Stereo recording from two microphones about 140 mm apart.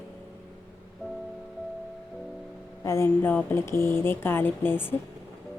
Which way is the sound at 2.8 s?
20° left (ahead or behind).